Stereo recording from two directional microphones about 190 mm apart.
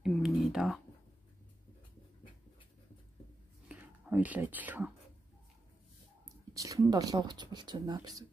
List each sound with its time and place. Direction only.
0.0 s a sound: centre (ahead or behind)
3.6 s speech: 5° right (ahead or behind)
6.2 s speech: 15° right (ahead or behind)